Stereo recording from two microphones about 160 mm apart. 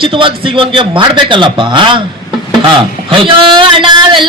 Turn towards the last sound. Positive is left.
turn(degrees=-30)  # may be behind; listen again after turning